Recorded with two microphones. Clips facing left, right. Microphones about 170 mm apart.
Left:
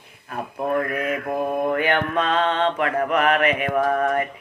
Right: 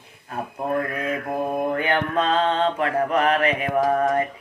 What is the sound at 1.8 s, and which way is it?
Mantra, 30° right (ahead or behind).